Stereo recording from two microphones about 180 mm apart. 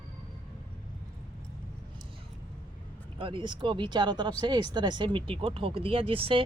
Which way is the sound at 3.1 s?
30° right (ahead or behind).